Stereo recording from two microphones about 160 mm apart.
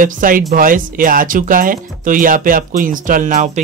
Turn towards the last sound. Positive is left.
turn(degrees=-55)  # may be behind; listen again after turning